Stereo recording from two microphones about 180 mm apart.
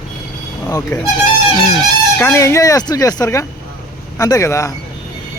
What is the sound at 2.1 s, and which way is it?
Speech, 10° left (ahead or behind).